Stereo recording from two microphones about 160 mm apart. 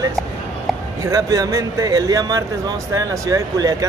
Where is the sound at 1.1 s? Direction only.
20° right (ahead or behind).